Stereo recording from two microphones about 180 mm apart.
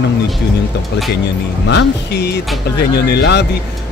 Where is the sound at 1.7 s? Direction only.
70° left (ahead or behind).